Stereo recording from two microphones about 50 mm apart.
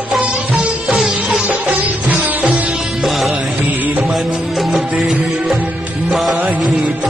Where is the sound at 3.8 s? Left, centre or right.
Right.